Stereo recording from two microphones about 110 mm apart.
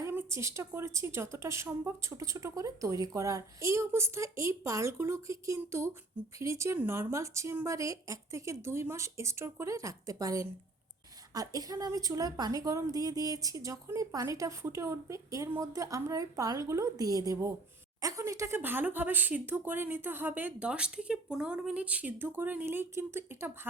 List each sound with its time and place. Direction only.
0.0 s a woman's voice: 20° right (ahead or behind)